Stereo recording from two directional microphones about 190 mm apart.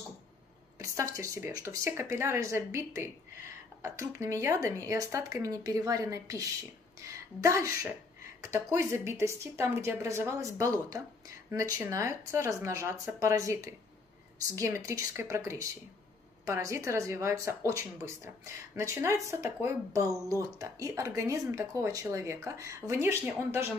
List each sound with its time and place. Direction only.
0.7 s a woman's voice: 15° right (ahead or behind)